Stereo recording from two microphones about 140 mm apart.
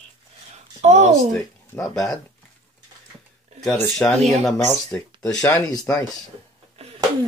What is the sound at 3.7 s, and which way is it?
Speech, 15° left (ahead or behind).